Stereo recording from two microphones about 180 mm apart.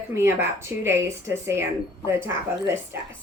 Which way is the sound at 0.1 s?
15° right (ahead or behind).